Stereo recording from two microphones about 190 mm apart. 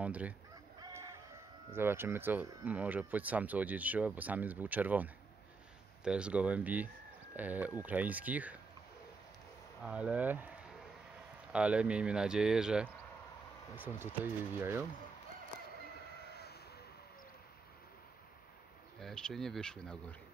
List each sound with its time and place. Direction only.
0.0 s speech: 5° right (ahead or behind)
0.7 s chicken: 20° right (ahead or behind)
1.7 s speech: 10° right (ahead or behind)
9.8 s speech: 5° right (ahead or behind)
11.5 s speech: 5° right (ahead or behind)
18.9 s speech: 5° left (ahead or behind)